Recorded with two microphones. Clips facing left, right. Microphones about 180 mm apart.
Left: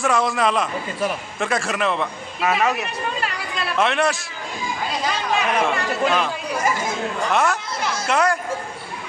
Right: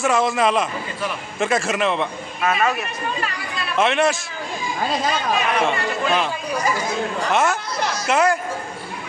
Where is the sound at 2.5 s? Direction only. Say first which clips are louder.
Even; 15° left (ahead or behind).